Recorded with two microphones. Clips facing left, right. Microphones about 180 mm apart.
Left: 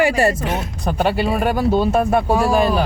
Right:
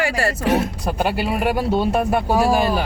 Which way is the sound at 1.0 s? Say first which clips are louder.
Left 3 dB; 5° right (ahead or behind).